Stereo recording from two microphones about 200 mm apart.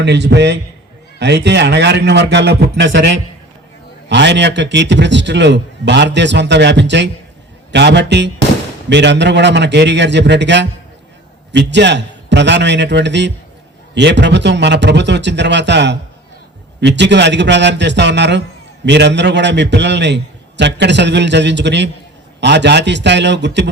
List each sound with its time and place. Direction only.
0.0 s a man's voice: 60° right (ahead or behind)